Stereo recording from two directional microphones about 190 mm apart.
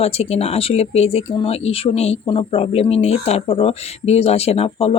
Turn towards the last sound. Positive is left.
turn(degrees=30)  # may be behind; listen again after turning